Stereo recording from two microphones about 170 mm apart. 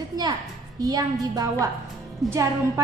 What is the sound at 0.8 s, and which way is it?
A woman's voice, 20° right (ahead or behind).